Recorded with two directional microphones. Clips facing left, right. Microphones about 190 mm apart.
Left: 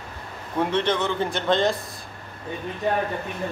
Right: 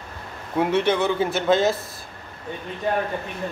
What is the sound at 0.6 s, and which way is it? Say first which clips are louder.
A man's voice: right 3 dB; 10° right (ahead or behind).